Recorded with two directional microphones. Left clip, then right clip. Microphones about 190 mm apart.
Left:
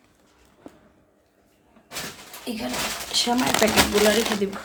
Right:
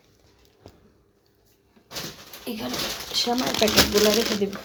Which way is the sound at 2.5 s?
15° right (ahead or behind).